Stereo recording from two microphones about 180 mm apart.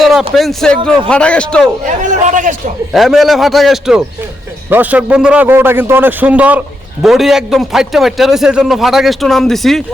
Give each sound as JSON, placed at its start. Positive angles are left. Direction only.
{"t": 0.0, "sound": "a sound", "side_deg": 0}
{"t": 0.3, "sound": "a man's voice", "side_deg": 0}
{"t": 1.9, "sound": "a man's voice", "side_deg": -45}
{"t": 2.9, "sound": "a man's voice", "side_deg": 0}